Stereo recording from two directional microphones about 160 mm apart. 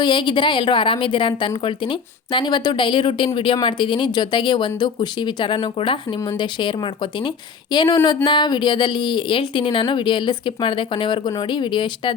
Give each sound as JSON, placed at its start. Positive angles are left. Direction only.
{"t": 0.0, "sound": "a woman's voice", "side_deg": 30}